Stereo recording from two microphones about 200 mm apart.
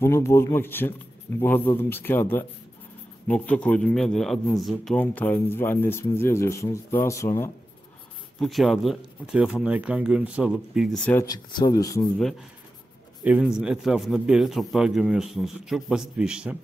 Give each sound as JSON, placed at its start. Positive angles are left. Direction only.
{"t": 0.0, "sound": "a man's voice", "side_deg": 15}
{"t": 8.4, "sound": "a man's voice", "side_deg": 0}
{"t": 11.1, "sound": "a man's voice", "side_deg": 15}
{"t": 13.2, "sound": "a man's voice", "side_deg": -5}